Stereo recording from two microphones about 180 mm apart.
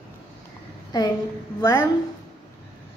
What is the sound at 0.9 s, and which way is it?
Speech, 20° left (ahead or behind).